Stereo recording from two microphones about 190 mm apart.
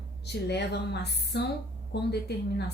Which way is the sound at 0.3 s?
60° left (ahead or behind).